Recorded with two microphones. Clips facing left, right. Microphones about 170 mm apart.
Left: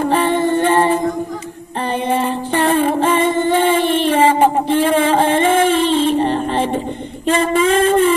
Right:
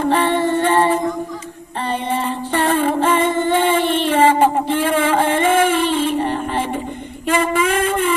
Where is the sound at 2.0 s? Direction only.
15° left (ahead or behind).